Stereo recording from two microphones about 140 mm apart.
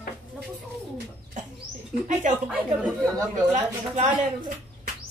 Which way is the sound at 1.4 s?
65° right (ahead or behind).